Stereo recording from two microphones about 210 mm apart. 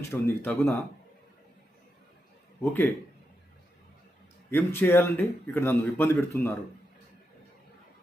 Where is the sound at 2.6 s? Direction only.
10° left (ahead or behind).